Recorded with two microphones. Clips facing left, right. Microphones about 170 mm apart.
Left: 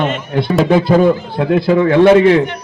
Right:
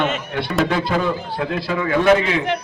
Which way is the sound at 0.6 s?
30° left (ahead or behind).